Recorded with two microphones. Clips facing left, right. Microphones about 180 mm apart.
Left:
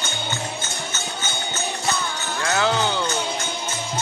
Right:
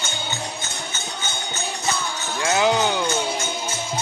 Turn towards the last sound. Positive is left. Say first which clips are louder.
# right 2 dB
turn(degrees=-15)  # may be behind; listen again after turning